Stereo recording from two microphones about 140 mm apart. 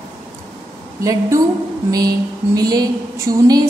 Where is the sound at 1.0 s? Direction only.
20° right (ahead or behind).